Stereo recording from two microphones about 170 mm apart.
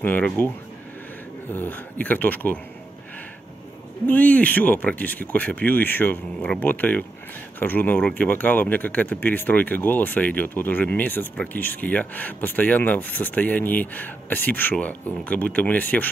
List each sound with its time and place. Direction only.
0.0 s speech: 10° left (ahead or behind)
1.5 s speech: 10° left (ahead or behind)
4.0 s speech: 10° left (ahead or behind)